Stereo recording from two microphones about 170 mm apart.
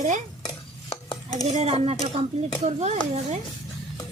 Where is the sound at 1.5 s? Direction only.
35° right (ahead or behind).